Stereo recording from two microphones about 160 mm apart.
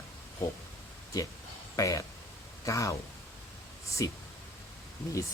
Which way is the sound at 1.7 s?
20° left (ahead or behind).